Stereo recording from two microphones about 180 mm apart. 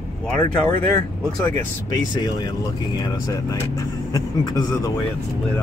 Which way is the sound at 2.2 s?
25° left (ahead or behind).